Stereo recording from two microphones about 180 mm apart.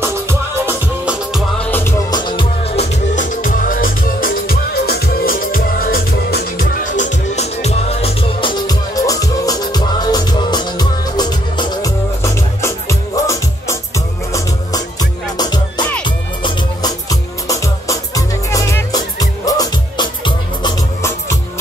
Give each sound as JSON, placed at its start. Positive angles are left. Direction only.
{"t": 0.0, "sound": "music", "side_deg": -10}
{"t": 1.3, "sound": "music", "side_deg": 10}
{"t": 2.0, "sound": "music", "side_deg": 25}